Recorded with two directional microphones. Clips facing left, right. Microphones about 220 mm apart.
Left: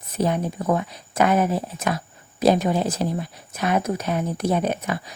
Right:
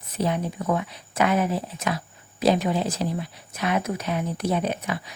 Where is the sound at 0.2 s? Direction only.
45° left (ahead or behind).